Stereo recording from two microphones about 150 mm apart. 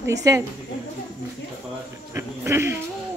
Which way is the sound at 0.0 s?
20° right (ahead or behind).